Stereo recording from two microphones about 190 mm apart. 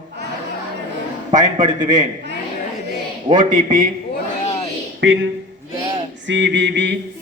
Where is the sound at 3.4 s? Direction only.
45° right (ahead or behind).